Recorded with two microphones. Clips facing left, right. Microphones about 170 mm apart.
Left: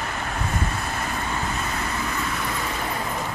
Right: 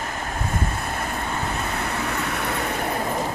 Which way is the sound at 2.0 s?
65° right (ahead or behind).